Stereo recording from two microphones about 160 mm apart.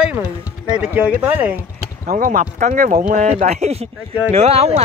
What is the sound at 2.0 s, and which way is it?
Speech, 55° right (ahead or behind).